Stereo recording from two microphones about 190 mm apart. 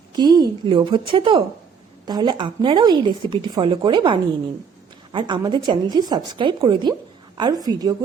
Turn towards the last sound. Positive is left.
turn(degrees=-20)  # may be behind; listen again after turning